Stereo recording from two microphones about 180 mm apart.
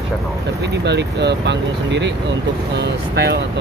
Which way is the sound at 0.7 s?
70° right (ahead or behind).